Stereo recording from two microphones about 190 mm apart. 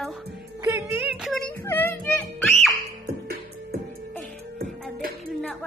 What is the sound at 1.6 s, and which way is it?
Child singing, 10° left (ahead or behind).